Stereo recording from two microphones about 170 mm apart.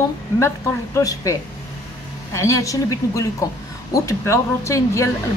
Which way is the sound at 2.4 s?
20° left (ahead or behind).